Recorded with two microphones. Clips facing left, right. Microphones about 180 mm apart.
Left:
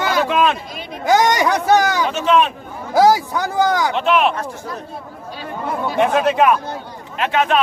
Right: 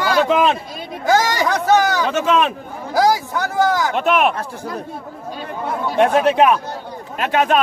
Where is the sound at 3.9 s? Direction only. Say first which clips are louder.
Even; 50° right (ahead or behind).